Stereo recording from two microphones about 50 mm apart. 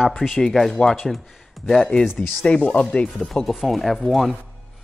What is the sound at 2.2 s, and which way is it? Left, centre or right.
Speech, left.